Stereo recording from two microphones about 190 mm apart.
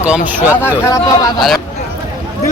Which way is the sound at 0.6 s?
15° left (ahead or behind).